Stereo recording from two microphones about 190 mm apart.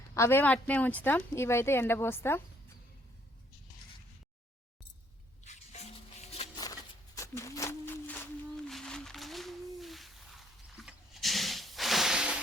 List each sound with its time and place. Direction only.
0.1 s speech: 15° left (ahead or behind)
5.5 s music: 35° left (ahead or behind)
7.2 s a sound: 15° left (ahead or behind); by 12.4 s 5° right (ahead or behind)